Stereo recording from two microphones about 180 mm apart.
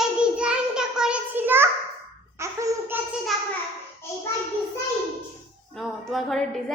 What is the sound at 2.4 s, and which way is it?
Babbling, 15° right (ahead or behind).